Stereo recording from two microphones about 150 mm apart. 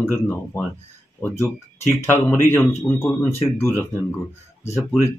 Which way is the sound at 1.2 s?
20° left (ahead or behind).